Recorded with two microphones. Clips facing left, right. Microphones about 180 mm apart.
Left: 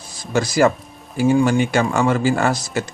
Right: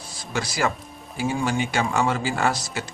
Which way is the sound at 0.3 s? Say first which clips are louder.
Left 9 dB; 45° left (ahead or behind).